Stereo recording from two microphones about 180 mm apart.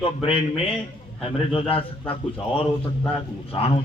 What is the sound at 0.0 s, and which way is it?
Speech, 30° left (ahead or behind).